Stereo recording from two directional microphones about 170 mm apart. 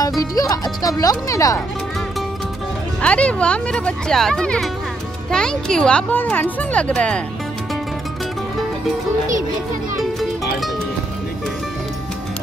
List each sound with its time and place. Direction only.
0.2 s speech: 20° left (ahead or behind)
3.0 s speech: 5° left (ahead or behind)